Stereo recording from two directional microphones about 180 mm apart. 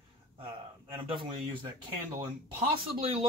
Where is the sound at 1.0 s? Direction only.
30° right (ahead or behind).